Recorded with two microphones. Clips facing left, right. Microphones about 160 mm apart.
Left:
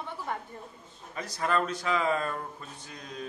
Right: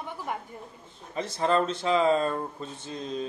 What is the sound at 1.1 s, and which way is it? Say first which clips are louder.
Speech: right 4 dB; 25° right (ahead or behind).